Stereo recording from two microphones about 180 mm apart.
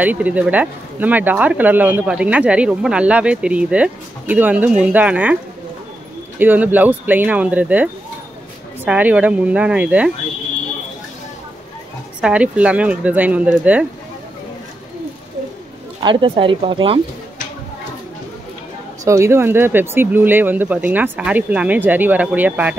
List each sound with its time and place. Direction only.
0.0 s speech: 10° right (ahead or behind)
12.2 s speech: 5° right (ahead or behind)
16.0 s speech: 25° right (ahead or behind)
19.0 s speech: 15° right (ahead or behind)